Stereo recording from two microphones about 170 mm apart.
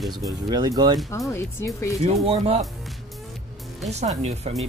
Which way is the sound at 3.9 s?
40° right (ahead or behind).